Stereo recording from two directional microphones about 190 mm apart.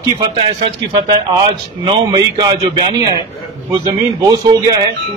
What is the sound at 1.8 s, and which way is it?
A man's voice, 25° right (ahead or behind).